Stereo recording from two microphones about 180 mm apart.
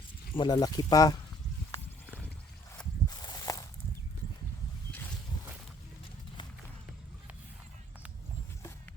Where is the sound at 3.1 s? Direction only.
25° left (ahead or behind).